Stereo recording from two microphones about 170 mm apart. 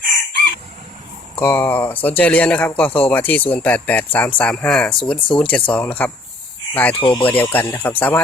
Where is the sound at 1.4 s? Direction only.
10° left (ahead or behind).